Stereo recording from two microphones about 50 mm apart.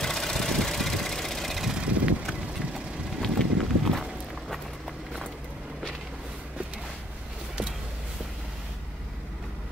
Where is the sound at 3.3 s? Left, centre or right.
Centre.